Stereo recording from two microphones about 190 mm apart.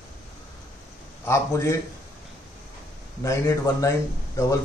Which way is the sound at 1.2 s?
15° left (ahead or behind).